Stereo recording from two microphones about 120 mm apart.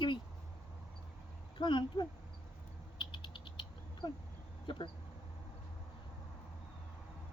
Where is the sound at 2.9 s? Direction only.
40° left (ahead or behind).